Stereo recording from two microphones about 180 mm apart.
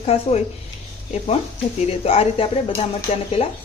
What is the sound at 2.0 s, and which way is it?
Speech, 35° left (ahead or behind).